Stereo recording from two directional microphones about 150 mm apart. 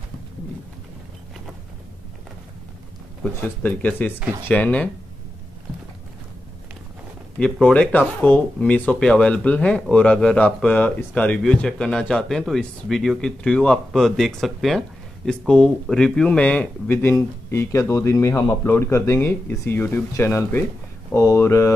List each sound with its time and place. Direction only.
3.3 s speech: 10° left (ahead or behind)
7.3 s speech: 5° left (ahead or behind)